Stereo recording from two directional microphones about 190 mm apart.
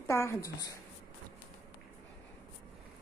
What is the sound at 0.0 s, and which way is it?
Speech, 15° left (ahead or behind).